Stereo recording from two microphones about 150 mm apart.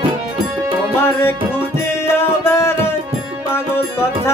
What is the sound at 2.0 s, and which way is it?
Music, 15° left (ahead or behind).